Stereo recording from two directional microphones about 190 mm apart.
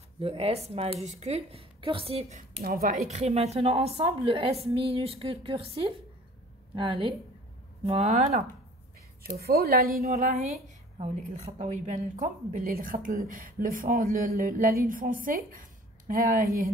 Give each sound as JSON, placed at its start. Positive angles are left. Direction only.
{"t": 0.2, "sound": "a woman's voice", "side_deg": -30}
{"t": 3.1, "sound": "a woman's voice", "side_deg": -35}
{"t": 9.4, "sound": "a woman's voice", "side_deg": -50}
{"t": 10.3, "sound": "a woman's voice", "side_deg": -35}